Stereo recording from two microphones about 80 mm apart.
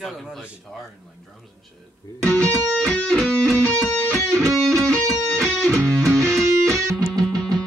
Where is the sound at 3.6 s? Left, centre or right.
Right.